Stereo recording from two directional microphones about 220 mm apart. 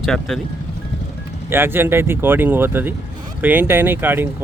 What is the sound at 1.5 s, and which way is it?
Speech, 10° right (ahead or behind).